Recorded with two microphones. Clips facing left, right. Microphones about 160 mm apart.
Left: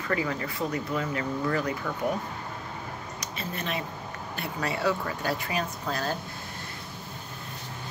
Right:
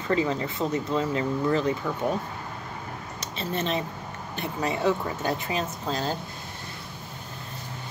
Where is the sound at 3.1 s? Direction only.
25° right (ahead or behind).